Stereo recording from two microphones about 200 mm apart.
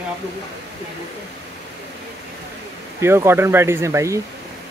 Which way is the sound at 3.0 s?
15° right (ahead or behind).